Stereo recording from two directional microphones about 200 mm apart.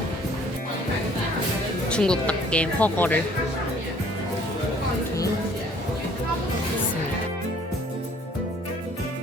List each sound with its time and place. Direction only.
1.9 s speech: 5° left (ahead or behind)